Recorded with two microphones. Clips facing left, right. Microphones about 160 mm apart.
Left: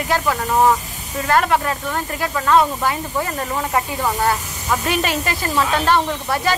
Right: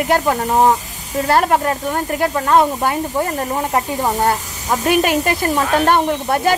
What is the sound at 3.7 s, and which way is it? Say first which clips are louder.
Speech: right 2 dB; 25° right (ahead or behind).